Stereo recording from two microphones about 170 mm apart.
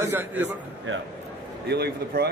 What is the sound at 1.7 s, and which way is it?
Speech, 70° right (ahead or behind).